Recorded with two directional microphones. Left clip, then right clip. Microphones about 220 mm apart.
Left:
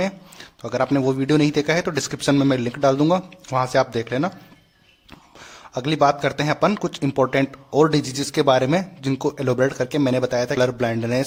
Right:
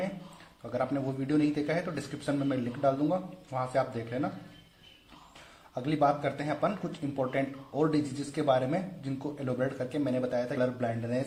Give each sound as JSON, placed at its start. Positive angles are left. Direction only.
{"t": 0.6, "sound": "a man's voice", "side_deg": 35}
{"t": 5.7, "sound": "a man's voice", "side_deg": 40}